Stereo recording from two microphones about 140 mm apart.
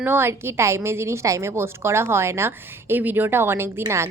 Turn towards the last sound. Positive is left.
turn(degrees=-20)  # may be behind; listen again after turning